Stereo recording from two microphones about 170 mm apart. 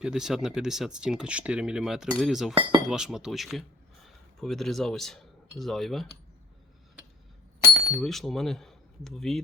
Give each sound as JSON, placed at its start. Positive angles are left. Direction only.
{"t": 0.0, "sound": "speech", "side_deg": -5}
{"t": 7.9, "sound": "speech", "side_deg": 0}